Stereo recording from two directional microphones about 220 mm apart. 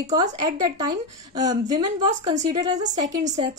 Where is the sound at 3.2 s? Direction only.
30° right (ahead or behind).